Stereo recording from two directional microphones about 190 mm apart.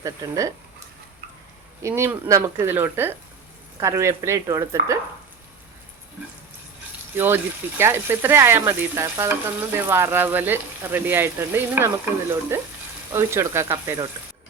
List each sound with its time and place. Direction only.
0.0 s speech: 15° right (ahead or behind)
1.8 s speech: 10° right (ahead or behind)
7.2 s speech: 10° right (ahead or behind)